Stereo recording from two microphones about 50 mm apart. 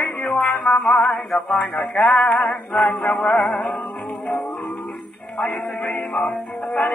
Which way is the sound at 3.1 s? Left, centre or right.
Left.